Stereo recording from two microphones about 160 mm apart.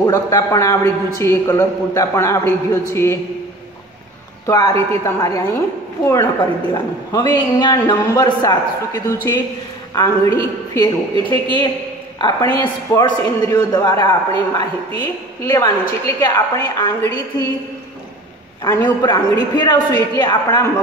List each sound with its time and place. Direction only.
0.0 s a man's voice: 20° left (ahead or behind)
4.5 s a man's voice: 20° left (ahead or behind)
6.7 s a man's voice: 25° left (ahead or behind)
18.6 s a man's voice: 20° left (ahead or behind)